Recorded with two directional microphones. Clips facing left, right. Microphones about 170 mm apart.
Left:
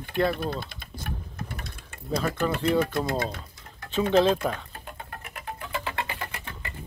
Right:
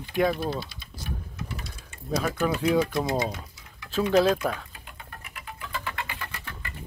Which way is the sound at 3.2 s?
50° left (ahead or behind).